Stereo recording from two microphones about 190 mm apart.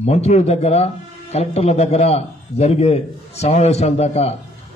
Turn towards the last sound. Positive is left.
turn(degrees=35)  # may be behind; listen again after turning